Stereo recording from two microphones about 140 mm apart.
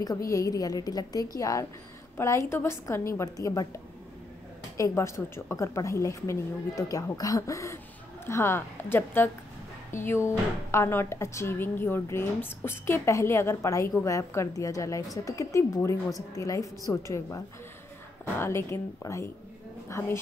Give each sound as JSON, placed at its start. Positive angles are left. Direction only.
{"t": 0.3, "sound": "a woman's voice", "side_deg": 25}